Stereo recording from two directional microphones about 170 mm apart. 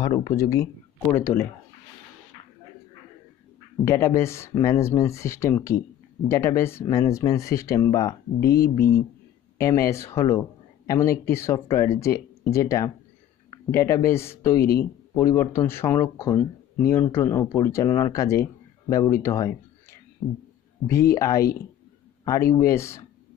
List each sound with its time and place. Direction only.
0.0 s speech: 25° left (ahead or behind)
3.8 s speech: 15° left (ahead or behind)